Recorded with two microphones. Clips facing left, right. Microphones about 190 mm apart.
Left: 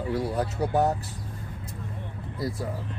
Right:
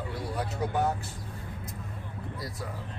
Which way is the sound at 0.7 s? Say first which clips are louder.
Left 5 dB; 40° left (ahead or behind).